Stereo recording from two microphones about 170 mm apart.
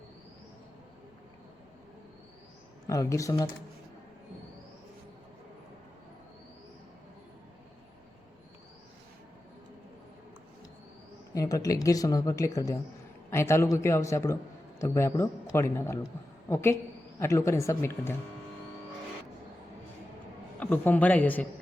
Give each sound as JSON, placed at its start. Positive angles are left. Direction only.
{"t": 2.8, "sound": "speech", "side_deg": 20}
{"t": 11.3, "sound": "a man's voice", "side_deg": 20}
{"t": 20.6, "sound": "a man's voice", "side_deg": 10}